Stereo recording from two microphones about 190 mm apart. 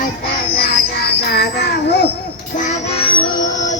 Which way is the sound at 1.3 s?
60° left (ahead or behind).